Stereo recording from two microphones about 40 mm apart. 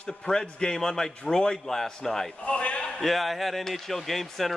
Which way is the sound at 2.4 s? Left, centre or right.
Left.